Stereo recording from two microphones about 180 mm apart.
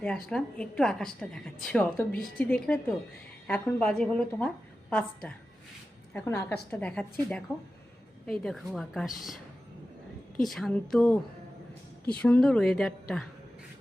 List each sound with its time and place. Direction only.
0.0 s a woman's voice: 5° left (ahead or behind)
10.4 s a woman's voice: centre (ahead or behind)